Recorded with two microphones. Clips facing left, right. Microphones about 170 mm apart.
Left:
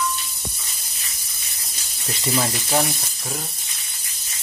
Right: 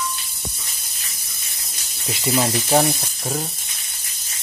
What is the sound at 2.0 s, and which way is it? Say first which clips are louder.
Speech: right 3 dB; 10° right (ahead or behind).